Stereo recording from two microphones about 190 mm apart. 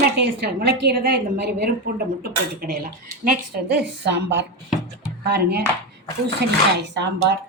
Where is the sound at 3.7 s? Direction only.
65° right (ahead or behind).